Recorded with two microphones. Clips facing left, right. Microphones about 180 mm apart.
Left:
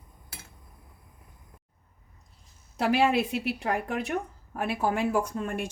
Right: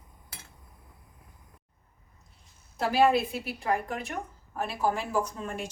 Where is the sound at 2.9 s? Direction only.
70° left (ahead or behind).